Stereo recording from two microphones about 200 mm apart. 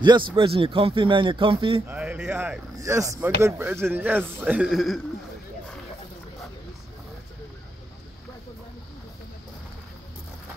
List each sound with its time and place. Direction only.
0.0 s speech: 25° right (ahead or behind)
1.9 s a man's voice: 5° right (ahead or behind)